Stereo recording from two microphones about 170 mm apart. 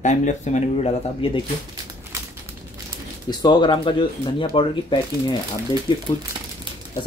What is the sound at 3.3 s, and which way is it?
Speech, 25° left (ahead or behind).